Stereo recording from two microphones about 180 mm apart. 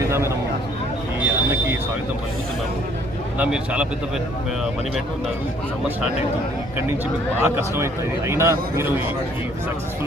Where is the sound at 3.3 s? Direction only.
10° right (ahead or behind).